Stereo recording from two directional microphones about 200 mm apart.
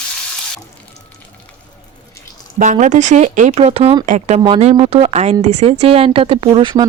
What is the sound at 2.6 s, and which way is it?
Speech, 40° right (ahead or behind).